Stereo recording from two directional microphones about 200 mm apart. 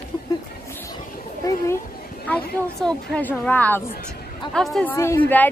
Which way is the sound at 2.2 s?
5° left (ahead or behind).